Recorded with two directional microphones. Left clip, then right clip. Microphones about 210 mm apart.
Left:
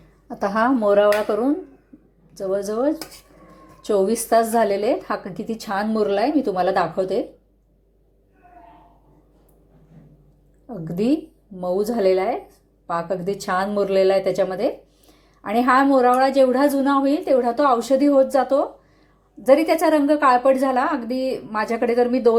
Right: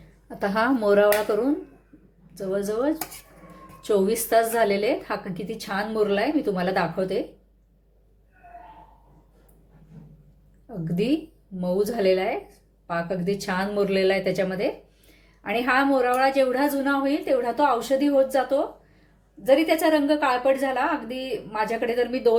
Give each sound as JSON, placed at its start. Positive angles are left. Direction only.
{"t": 0.3, "sound": "a woman's voice", "side_deg": 10}
{"t": 0.6, "sound": "speech", "side_deg": 0}
{"t": 2.5, "sound": "a woman's voice", "side_deg": 15}
{"t": 10.7, "sound": "a woman's voice", "side_deg": 15}